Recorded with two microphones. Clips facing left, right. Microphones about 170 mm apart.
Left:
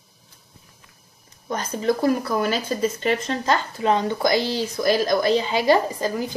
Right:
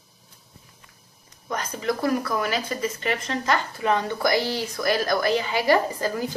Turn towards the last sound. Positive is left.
turn(degrees=20)  # may be behind; listen again after turning